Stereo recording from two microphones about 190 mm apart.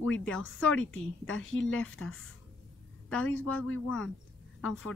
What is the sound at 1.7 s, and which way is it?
Speech, 5° left (ahead or behind).